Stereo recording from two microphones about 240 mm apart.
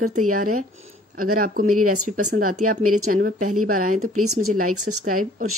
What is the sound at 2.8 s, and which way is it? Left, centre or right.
Speech, right.